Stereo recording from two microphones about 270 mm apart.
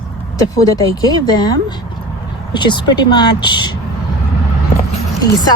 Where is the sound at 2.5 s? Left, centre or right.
Centre.